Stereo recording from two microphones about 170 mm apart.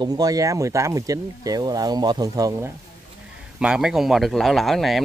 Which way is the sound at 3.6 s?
5° right (ahead or behind).